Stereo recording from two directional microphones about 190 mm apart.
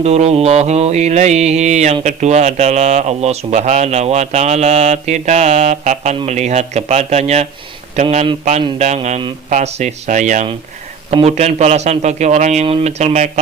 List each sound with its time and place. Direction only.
0.0 s mantra: 35° right (ahead or behind)